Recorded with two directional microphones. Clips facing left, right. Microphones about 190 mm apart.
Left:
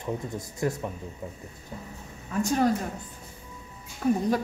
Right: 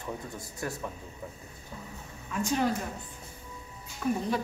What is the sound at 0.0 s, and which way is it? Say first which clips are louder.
Speech: left 6 dB; 20° left (ahead or behind).